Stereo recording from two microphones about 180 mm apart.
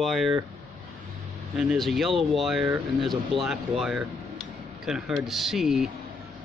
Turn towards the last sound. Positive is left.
turn(degrees=0)  # may be behind; listen again after turning